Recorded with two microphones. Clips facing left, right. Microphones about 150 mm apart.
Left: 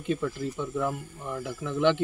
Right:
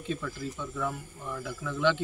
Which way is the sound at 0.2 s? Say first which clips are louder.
Left 6 dB; 25° left (ahead or behind).